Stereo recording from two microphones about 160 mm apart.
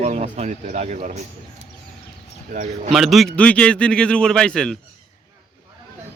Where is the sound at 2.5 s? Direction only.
55° right (ahead or behind).